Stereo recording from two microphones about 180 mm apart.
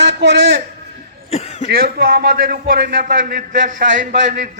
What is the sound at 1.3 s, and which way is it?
Cough, 35° left (ahead or behind).